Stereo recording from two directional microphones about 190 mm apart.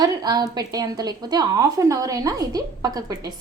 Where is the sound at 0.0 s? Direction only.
20° right (ahead or behind).